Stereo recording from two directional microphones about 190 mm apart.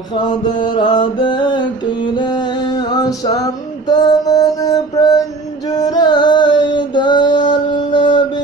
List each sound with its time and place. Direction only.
0.5 s mantra: 25° left (ahead or behind)
2.9 s music: 20° left (ahead or behind)
3.9 s mantra: 20° left (ahead or behind)
5.8 s music: 20° left (ahead or behind)